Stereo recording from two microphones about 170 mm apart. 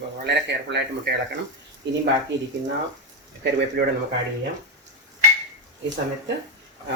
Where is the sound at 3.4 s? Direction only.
90° right.